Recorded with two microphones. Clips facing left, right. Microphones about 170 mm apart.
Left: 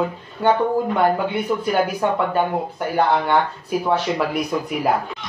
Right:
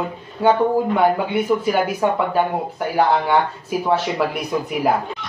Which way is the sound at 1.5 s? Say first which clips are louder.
Right 1 dB; centre (ahead or behind).